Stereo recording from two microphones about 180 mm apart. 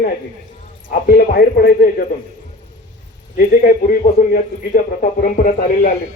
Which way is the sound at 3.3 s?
50° left (ahead or behind).